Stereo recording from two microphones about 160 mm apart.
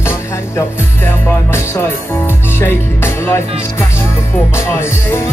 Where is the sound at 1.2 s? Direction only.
15° left (ahead or behind).